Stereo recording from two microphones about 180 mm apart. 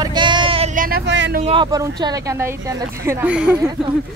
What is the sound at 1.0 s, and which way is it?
Speech, 85° right.